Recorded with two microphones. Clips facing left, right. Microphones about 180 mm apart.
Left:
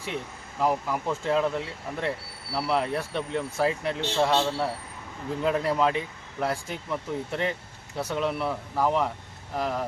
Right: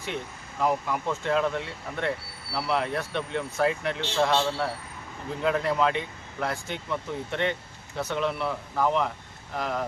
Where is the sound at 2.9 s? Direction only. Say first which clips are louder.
Left 1 dB; 35° left (ahead or behind).